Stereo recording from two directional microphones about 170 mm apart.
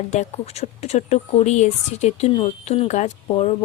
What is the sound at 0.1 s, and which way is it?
Speech, 40° left (ahead or behind).